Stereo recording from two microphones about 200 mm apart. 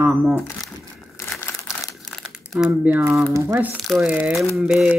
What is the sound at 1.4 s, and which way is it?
Crumpling, 10° left (ahead or behind).